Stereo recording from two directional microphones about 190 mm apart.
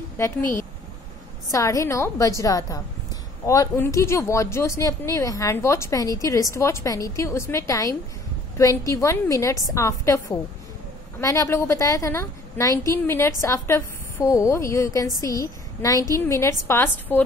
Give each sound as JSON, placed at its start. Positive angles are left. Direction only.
{"t": 0.2, "sound": "speech", "side_deg": 15}